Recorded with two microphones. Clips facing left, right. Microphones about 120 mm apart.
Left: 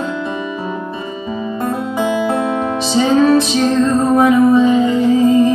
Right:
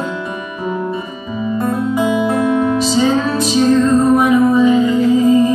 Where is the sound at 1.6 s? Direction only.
30° left (ahead or behind).